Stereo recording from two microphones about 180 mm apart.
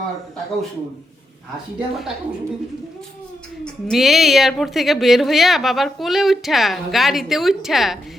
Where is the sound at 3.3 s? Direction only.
5° left (ahead or behind).